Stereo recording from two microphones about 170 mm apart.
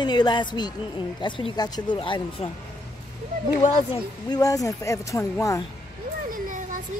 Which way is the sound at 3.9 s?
20° left (ahead or behind).